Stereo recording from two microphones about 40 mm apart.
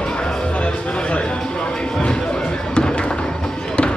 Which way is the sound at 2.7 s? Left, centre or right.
Left.